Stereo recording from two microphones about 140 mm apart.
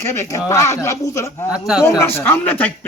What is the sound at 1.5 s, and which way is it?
Speech, 5° right (ahead or behind).